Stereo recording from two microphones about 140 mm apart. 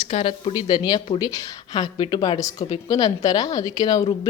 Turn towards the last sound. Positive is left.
turn(degrees=30)  # may be behind; listen again after turning